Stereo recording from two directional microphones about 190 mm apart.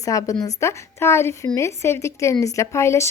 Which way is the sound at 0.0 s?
15° left (ahead or behind).